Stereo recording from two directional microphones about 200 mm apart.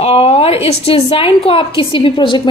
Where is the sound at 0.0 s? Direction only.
30° left (ahead or behind).